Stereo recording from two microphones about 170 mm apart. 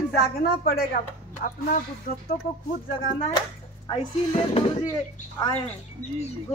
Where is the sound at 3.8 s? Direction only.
30° left (ahead or behind).